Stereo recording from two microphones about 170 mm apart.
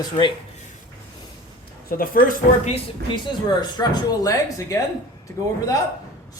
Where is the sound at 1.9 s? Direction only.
55° left (ahead or behind).